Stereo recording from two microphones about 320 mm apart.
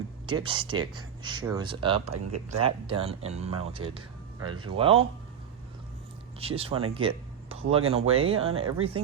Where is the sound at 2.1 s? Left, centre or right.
Right.